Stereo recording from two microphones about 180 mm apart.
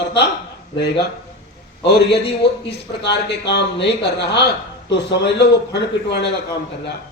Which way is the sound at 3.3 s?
75° left (ahead or behind).